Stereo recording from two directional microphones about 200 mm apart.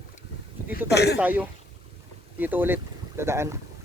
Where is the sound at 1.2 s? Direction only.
10° right (ahead or behind).